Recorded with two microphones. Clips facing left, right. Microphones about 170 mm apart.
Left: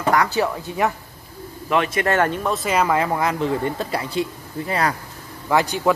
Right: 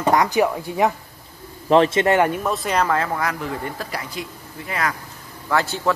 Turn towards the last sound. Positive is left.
turn(degrees=15)  # may be behind; listen again after turning